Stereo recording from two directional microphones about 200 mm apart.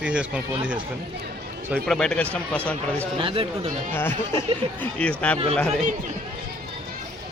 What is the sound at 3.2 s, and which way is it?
Speech, 25° right (ahead or behind).